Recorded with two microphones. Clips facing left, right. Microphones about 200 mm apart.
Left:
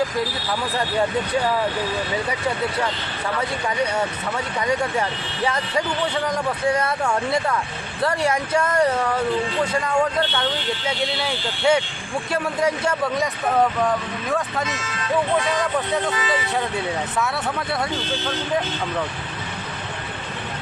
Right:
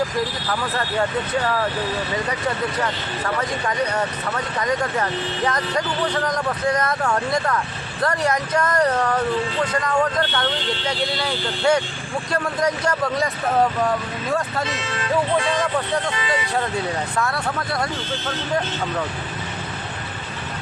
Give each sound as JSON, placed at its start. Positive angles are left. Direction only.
{"t": 3.9, "sound": "speech", "side_deg": 10}
{"t": 14.6, "sound": "speech", "side_deg": -30}
{"t": 17.2, "sound": "speech", "side_deg": 5}